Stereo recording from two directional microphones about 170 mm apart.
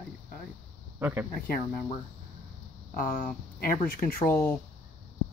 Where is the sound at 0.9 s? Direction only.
10° right (ahead or behind).